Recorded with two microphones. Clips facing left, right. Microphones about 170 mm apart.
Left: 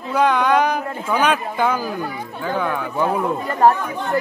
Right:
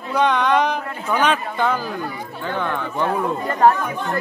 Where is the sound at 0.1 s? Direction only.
5° left (ahead or behind).